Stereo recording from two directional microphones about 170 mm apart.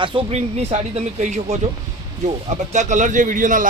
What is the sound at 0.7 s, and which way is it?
Speech, 45° right (ahead or behind).